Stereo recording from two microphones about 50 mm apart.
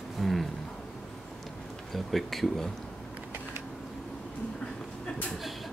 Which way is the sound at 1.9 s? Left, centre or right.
Centre.